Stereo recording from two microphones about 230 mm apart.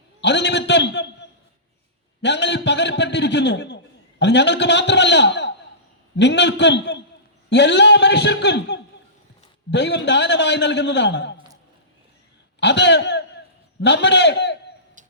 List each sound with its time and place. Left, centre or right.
0.2 s a sound: left
2.2 s a man's voice: left
12.5 s a man's voice: left